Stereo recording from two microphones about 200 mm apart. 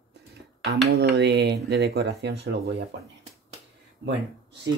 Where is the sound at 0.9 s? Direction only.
55° right (ahead or behind).